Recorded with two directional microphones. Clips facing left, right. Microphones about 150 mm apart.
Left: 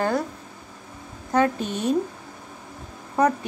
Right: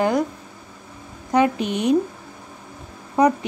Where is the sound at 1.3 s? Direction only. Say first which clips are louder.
Right 3 dB; 15° right (ahead or behind).